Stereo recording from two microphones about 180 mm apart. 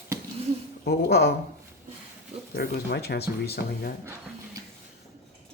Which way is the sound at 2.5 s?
60° left (ahead or behind).